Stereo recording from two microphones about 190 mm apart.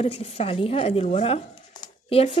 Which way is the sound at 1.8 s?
30° left (ahead or behind).